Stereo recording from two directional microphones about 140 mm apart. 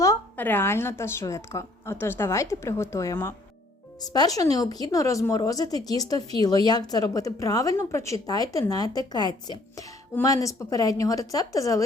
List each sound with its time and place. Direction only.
0.0 s a woman's voice: 15° left (ahead or behind)